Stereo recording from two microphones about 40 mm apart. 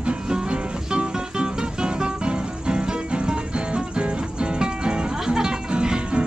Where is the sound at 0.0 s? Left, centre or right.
Right.